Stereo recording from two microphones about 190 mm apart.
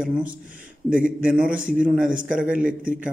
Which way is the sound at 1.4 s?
45° right (ahead or behind).